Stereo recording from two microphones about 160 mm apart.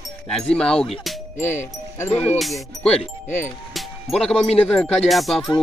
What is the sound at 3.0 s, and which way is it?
Speech, 50° left (ahead or behind).